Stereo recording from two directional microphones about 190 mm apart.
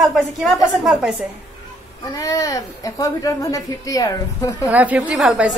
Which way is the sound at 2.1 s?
15° left (ahead or behind).